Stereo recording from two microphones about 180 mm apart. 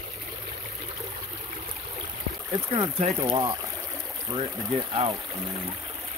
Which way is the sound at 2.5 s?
30° right (ahead or behind).